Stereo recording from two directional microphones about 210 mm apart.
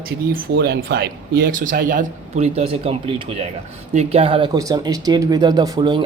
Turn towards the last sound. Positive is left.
turn(degrees=-20)  # may be behind; listen again after turning